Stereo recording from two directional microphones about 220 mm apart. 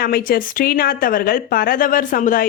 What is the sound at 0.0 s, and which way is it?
A woman's voice, 40° left (ahead or behind).